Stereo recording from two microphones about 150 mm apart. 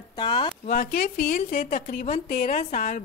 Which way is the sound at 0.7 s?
60° left (ahead or behind).